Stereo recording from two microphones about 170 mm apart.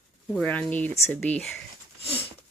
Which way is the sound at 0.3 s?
5° left (ahead or behind).